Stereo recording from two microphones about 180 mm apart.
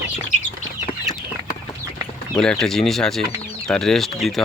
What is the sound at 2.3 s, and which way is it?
Speech, 5° left (ahead or behind).